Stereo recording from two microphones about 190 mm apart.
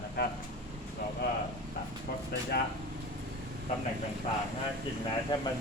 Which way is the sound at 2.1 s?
60° left (ahead or behind).